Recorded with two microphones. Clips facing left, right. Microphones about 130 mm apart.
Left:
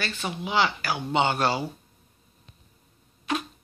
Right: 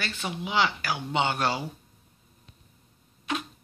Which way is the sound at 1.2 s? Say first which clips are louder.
Left 3 dB; 5° left (ahead or behind).